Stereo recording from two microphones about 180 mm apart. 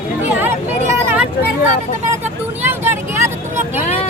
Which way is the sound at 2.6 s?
10° right (ahead or behind).